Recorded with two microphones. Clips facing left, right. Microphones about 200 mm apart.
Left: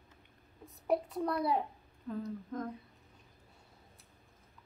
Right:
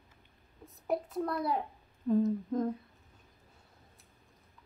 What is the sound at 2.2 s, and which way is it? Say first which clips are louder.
Humming: right 9 dB; 25° right (ahead or behind).